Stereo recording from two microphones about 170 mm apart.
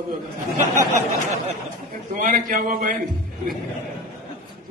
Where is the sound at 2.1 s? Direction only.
50° right (ahead or behind).